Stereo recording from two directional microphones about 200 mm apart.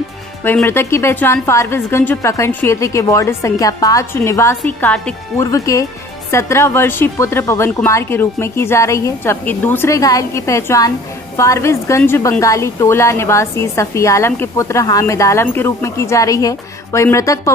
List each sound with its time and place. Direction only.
0.4 s a woman's voice: 10° left (ahead or behind)